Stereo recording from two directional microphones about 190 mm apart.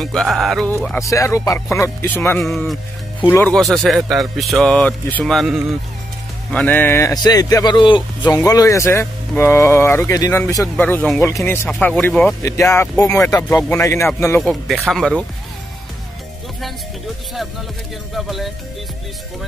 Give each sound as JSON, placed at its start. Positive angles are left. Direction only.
{"t": 0.0, "sound": "speech", "side_deg": 0}
{"t": 0.9, "sound": "speech", "side_deg": 15}
{"t": 2.5, "sound": "speech", "side_deg": 0}
{"t": 3.3, "sound": "speech", "side_deg": 15}
{"t": 3.5, "sound": "speech", "side_deg": 0}
{"t": 12.4, "sound": "speech", "side_deg": 15}
{"t": 14.4, "sound": "speech", "side_deg": 0}
{"t": 18.1, "sound": "speech", "side_deg": 0}